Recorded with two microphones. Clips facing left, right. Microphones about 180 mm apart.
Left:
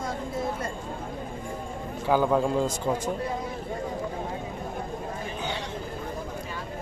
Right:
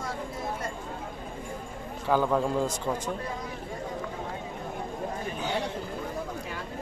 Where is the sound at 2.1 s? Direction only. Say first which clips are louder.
Left 2 dB; 5° left (ahead or behind).